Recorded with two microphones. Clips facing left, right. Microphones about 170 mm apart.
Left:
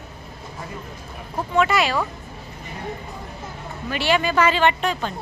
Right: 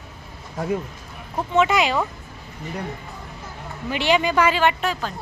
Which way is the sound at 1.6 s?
20° right (ahead or behind).